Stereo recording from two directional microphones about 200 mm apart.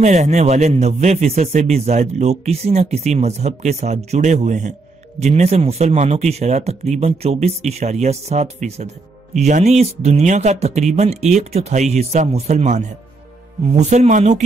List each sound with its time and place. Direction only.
0.0 s speech: 35° right (ahead or behind)